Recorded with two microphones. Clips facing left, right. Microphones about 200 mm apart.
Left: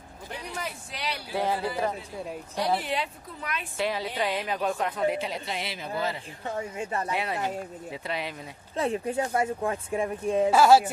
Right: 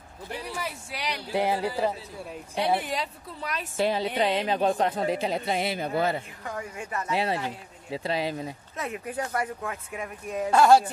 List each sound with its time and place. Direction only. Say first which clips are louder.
0.9 s speech: right 3 dB; 15° right (ahead or behind)
2.8 s a woman's voice: left 1 dB; 40° right (ahead or behind)
5.4 s a man's voice: right 7 dB; 50° right (ahead or behind)
6.4 s speech: left 3 dB; 25° left (ahead or behind)
7.1 s a woman's voice: right 2 dB; 30° right (ahead or behind)
8.7 s speech: left 6 dB; 30° left (ahead or behind)
10.5 s speech: right 1 dB; 5° left (ahead or behind)